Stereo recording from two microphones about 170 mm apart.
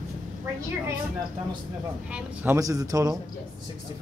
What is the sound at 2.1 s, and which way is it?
A man's voice, 15° right (ahead or behind).